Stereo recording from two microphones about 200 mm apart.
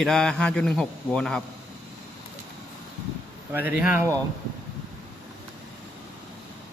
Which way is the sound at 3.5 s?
10° right (ahead or behind).